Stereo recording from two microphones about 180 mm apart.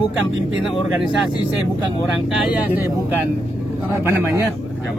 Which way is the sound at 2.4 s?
5° right (ahead or behind).